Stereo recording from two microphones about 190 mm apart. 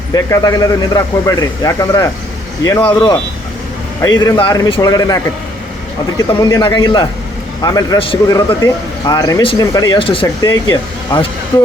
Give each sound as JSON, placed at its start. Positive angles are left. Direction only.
{"t": 0.1, "sound": "a man's voice", "side_deg": 20}
{"t": 4.2, "sound": "a man's voice", "side_deg": 25}